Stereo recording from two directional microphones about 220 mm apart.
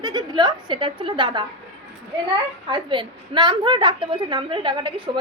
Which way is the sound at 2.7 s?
20° right (ahead or behind).